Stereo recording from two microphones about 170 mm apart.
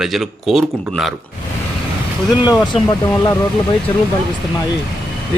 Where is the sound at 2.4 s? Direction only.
25° left (ahead or behind).